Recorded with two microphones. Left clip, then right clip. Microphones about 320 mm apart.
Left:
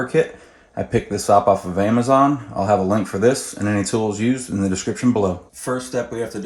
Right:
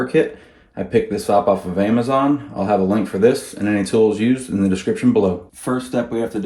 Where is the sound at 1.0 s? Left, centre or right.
Centre.